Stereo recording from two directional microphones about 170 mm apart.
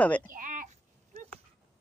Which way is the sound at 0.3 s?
50° right (ahead or behind).